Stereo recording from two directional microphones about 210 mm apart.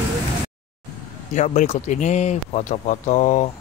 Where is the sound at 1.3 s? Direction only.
35° left (ahead or behind).